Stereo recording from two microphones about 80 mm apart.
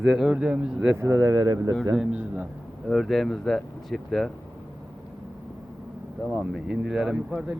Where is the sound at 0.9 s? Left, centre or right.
Right.